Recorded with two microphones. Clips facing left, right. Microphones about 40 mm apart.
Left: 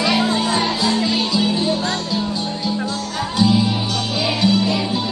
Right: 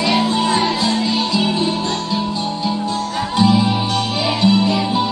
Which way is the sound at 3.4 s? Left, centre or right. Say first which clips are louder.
Right 2 dB; right.